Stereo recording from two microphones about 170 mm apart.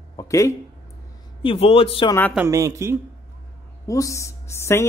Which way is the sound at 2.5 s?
15° right (ahead or behind).